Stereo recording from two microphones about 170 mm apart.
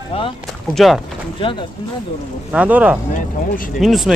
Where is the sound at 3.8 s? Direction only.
Centre (ahead or behind).